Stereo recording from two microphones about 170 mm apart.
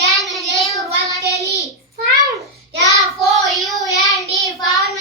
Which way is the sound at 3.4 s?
Centre (ahead or behind).